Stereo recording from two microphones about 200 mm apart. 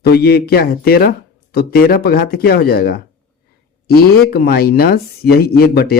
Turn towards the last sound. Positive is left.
turn(degrees=50)  # may be behind; listen again after turning